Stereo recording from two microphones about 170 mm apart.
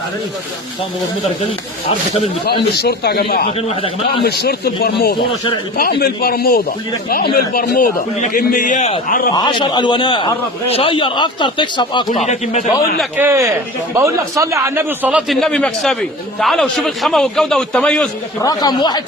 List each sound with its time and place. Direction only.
2.7 s speech: 70° left (ahead or behind)
3.7 s a man's voice: 35° left (ahead or behind)
4.2 s a man's voice: 70° left (ahead or behind)
9.3 s a man's voice: 25° left (ahead or behind)
12.2 s a man's voice: 45° left (ahead or behind)
13.1 s a man's voice: 15° right (ahead or behind)
15.3 s a man's voice: centre (ahead or behind)
18.4 s a man's voice: 25° left (ahead or behind)